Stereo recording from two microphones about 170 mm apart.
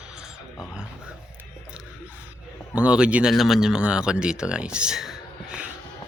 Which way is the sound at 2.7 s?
5° right (ahead or behind).